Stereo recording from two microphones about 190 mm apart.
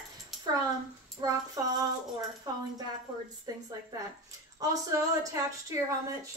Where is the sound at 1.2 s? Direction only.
20° right (ahead or behind).